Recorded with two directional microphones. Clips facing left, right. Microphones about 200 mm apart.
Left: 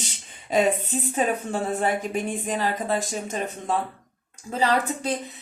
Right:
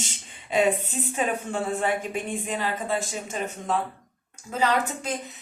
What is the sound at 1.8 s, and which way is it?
A woman's voice, 40° left (ahead or behind).